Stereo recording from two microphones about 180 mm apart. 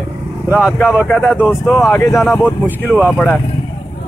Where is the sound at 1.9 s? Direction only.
15° left (ahead or behind).